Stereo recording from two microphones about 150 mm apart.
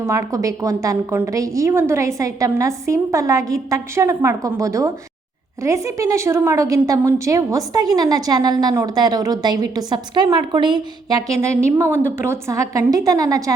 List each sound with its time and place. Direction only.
0.0 s a woman's voice: 20° right (ahead or behind)